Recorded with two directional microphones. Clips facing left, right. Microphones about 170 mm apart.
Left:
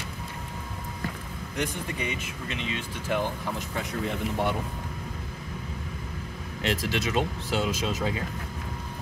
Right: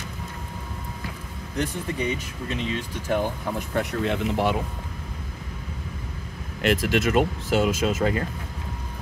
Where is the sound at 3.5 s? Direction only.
75° right (ahead or behind); by 4.6 s 90° right.